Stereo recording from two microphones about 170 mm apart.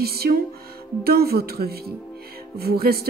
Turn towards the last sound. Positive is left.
turn(degrees=-65)  # may be behind; listen again after turning